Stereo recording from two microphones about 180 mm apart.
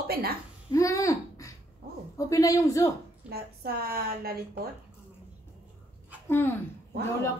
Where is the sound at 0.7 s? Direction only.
20° left (ahead or behind).